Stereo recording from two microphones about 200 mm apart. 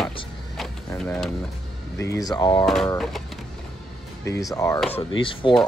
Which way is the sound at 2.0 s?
15° left (ahead or behind).